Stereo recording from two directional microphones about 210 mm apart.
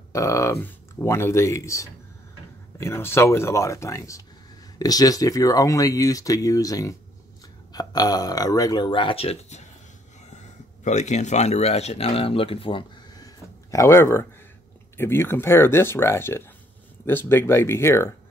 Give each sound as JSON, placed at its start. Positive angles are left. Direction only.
{"t": 0.1, "sound": "speech", "side_deg": 15}